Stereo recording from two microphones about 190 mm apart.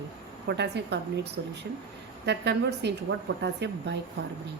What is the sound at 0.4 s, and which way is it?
A woman's voice, 65° right (ahead or behind).